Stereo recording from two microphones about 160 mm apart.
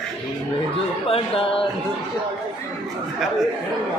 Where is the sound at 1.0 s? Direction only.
35° left (ahead or behind).